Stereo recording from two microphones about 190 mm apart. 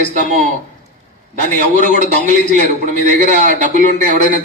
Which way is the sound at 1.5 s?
40° right (ahead or behind).